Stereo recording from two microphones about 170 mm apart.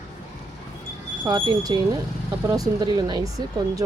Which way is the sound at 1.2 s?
25° right (ahead or behind).